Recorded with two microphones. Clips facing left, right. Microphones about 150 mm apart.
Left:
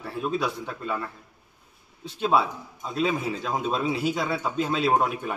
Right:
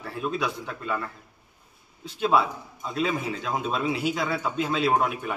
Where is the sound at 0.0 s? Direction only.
Centre (ahead or behind).